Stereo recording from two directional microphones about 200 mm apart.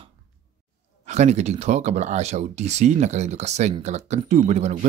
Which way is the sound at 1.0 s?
35° right (ahead or behind).